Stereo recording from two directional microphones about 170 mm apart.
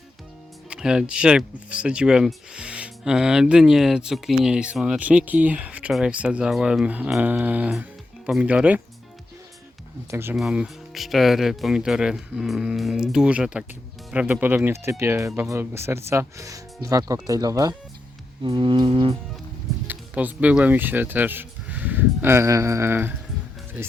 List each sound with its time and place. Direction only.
0.7 s speech: 5° right (ahead or behind)
10.1 s speech: 15° right (ahead or behind)
10.3 s speech: 5° right (ahead or behind); by 17.7 s 20° right (ahead or behind)
18.4 s music: 30° right (ahead or behind)
19.9 s speech: 10° right (ahead or behind)